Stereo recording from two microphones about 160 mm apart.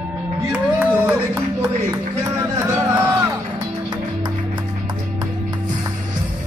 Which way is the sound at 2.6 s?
15° right (ahead or behind).